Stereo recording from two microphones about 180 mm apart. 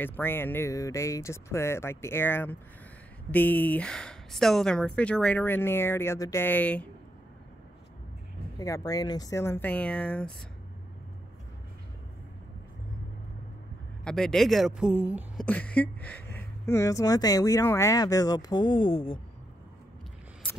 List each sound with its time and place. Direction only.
0.0 s speech: 10° left (ahead or behind)
8.5 s speech: 20° left (ahead or behind)
14.0 s a man's voice: 5° left (ahead or behind)
15.3 s speech: 10° left (ahead or behind); by 19.1 s 30° left (ahead or behind)